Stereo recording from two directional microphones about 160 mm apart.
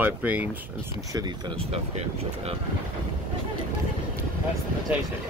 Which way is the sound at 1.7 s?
40° right (ahead or behind).